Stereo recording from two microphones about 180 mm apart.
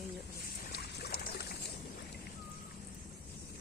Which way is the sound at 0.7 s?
60° left (ahead or behind).